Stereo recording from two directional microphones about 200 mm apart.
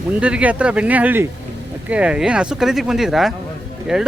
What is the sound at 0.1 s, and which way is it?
Speech, 5° right (ahead or behind).